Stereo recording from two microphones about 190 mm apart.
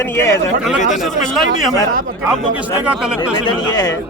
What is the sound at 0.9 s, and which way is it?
Speech, centre (ahead or behind).